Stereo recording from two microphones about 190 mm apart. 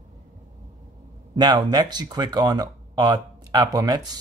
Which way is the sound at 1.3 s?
20° right (ahead or behind).